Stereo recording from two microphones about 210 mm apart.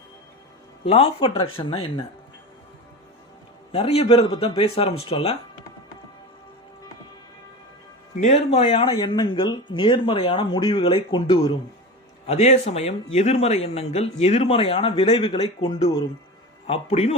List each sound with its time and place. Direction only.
0.9 s speech: 25° left (ahead or behind)
3.7 s speech: 30° left (ahead or behind)
8.2 s speech: 30° left (ahead or behind)